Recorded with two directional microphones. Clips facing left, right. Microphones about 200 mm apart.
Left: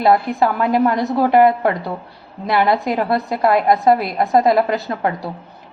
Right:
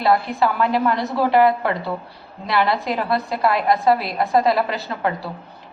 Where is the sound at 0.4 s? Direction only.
45° left (ahead or behind).